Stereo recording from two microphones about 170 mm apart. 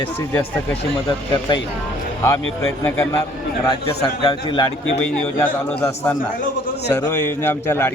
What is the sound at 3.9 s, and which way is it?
Speech, 25° left (ahead or behind).